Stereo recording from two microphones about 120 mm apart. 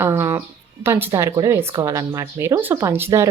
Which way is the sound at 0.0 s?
20° right (ahead or behind).